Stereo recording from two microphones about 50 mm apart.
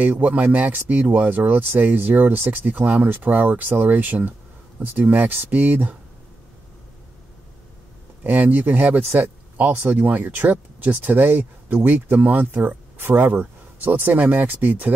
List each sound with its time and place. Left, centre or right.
0.0 s speech: right
8.2 s speech: right